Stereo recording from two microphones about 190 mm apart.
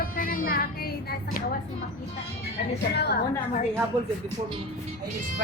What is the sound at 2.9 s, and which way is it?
Speech, 60° left (ahead or behind).